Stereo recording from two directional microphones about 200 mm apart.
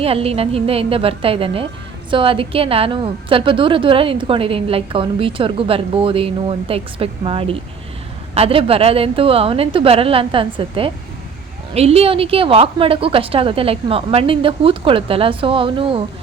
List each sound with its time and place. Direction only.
0.0 s a woman's voice: 30° right (ahead or behind)